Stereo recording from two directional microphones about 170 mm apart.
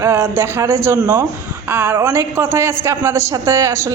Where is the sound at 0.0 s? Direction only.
15° right (ahead or behind).